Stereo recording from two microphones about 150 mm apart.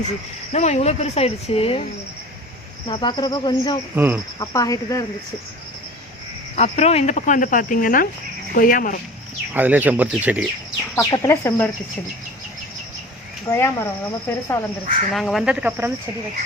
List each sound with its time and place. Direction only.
0.5 s speech: 50° left (ahead or behind)
2.8 s speech: 30° left (ahead or behind)
3.9 s speech: 15° right (ahead or behind)
4.4 s speech: 25° left (ahead or behind)
6.6 s speech: 45° left (ahead or behind); by 9.0 s 65° left (ahead or behind)
9.5 s speech: 10° right (ahead or behind)
10.9 s speech: 20° left (ahead or behind)
13.5 s speech: 15° left (ahead or behind)
15.1 s speech: centre (ahead or behind)
15.8 s speech: 15° right (ahead or behind)